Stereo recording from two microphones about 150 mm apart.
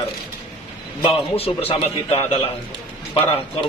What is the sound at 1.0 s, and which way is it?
A man's voice, 40° left (ahead or behind).